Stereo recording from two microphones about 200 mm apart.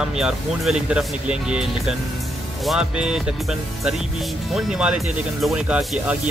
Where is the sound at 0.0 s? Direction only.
5° right (ahead or behind).